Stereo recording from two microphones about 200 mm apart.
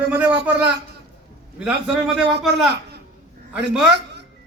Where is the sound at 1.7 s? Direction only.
5° right (ahead or behind).